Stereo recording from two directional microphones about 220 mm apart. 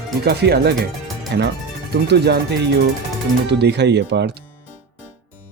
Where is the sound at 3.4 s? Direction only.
50° right (ahead or behind).